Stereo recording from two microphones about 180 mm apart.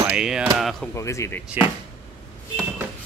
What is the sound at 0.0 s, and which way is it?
Speech, 5° right (ahead or behind).